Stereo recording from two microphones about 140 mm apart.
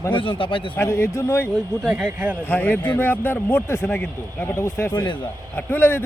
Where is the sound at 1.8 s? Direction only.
5° right (ahead or behind).